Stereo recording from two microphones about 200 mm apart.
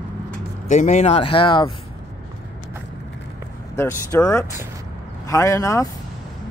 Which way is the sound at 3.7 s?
15° left (ahead or behind).